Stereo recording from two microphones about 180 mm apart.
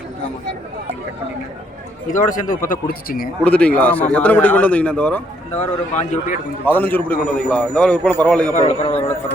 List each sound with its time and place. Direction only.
2.0 s speech: 45° left (ahead or behind)
3.4 s a man's voice: 5° left (ahead or behind)
5.5 s a man's voice: 40° left (ahead or behind)
6.7 s a man's voice: 10° left (ahead or behind)
8.5 s a man's voice: 35° left (ahead or behind)